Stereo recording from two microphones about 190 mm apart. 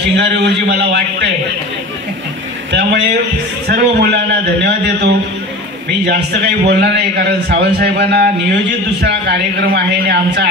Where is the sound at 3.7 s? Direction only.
60° right (ahead or behind).